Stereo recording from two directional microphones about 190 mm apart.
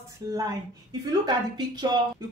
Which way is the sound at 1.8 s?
20° right (ahead or behind).